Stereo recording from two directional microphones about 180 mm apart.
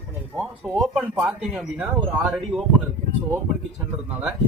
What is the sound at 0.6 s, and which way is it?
Speech, 5° right (ahead or behind).